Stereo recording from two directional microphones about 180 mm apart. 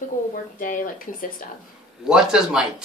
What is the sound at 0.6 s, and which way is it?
Speech, 50° left (ahead or behind).